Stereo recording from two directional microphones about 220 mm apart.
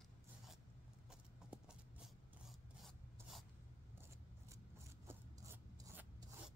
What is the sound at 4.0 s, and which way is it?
Scissors, 15° right (ahead or behind).